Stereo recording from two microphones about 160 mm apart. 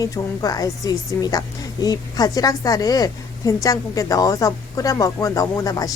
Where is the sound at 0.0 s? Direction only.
20° left (ahead or behind).